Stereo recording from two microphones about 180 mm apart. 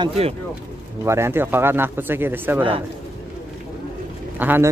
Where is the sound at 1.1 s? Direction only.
15° right (ahead or behind).